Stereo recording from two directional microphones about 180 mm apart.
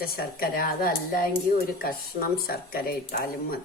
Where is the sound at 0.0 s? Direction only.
55° left (ahead or behind).